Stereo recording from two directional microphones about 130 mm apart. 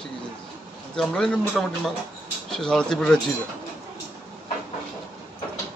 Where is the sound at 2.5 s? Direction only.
5° left (ahead or behind).